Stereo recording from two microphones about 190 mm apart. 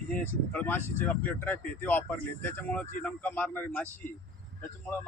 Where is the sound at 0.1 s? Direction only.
5° left (ahead or behind).